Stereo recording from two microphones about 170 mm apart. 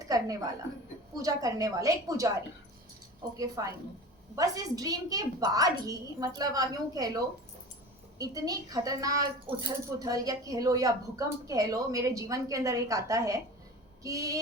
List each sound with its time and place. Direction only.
0.0 s a woman's voice: 20° right (ahead or behind)
3.3 s a woman's voice: 20° right (ahead or behind)
8.2 s a woman's voice: 20° right (ahead or behind)